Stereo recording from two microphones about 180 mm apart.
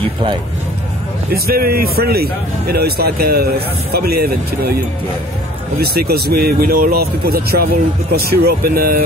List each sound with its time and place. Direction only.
1.3 s speech: 55° right (ahead or behind)
5.8 s speech: 60° right (ahead or behind)